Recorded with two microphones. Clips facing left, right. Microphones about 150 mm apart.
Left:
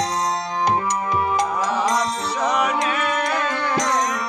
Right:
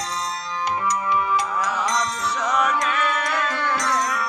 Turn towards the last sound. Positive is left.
turn(degrees=45)  # may be behind; listen again after turning